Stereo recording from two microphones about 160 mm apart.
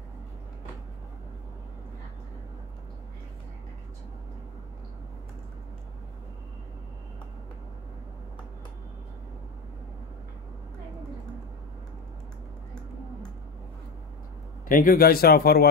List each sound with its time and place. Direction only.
14.7 s speech: 60° left (ahead or behind); by 15.7 s 75° left (ahead or behind)